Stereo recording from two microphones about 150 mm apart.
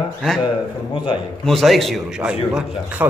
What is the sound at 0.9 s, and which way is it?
Speech, 35° left (ahead or behind).